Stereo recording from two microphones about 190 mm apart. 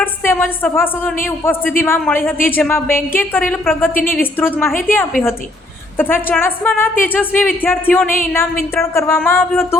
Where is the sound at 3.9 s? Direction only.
50° left (ahead or behind).